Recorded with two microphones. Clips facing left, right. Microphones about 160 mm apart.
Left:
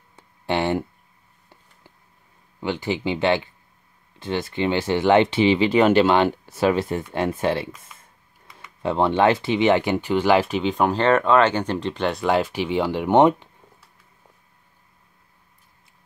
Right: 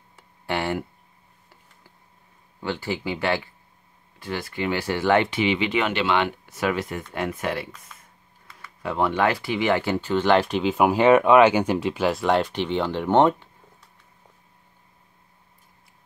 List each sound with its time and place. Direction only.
0.5 s speech: 20° left (ahead or behind)
2.6 s speech: 20° left (ahead or behind)